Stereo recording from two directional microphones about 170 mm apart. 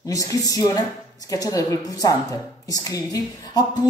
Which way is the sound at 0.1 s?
20° left (ahead or behind).